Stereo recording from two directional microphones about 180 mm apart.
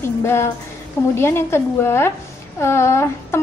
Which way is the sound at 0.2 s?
15° left (ahead or behind).